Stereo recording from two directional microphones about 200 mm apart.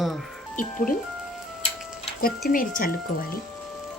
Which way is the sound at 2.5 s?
45° left (ahead or behind).